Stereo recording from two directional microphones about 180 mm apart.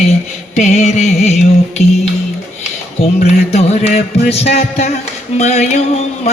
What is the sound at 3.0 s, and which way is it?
Music, 35° left (ahead or behind).